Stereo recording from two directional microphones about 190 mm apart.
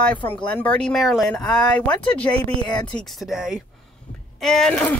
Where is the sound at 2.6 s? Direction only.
25° left (ahead or behind).